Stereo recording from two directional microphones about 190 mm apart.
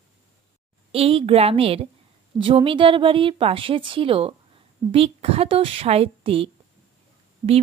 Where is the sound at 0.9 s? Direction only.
30° right (ahead or behind).